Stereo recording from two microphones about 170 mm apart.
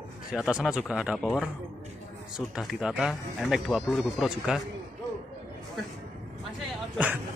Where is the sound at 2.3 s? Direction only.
5° right (ahead or behind).